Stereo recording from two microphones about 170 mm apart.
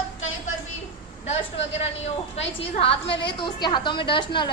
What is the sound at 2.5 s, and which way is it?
A woman's voice, 35° left (ahead or behind).